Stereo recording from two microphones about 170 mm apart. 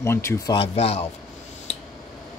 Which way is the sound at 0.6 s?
35° left (ahead or behind).